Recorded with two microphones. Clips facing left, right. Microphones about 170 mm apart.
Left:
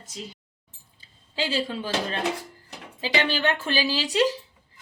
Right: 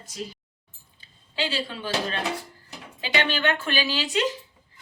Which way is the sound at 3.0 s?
35° left (ahead or behind).